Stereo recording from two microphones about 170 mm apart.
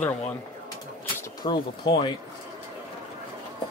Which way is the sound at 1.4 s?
25° left (ahead or behind).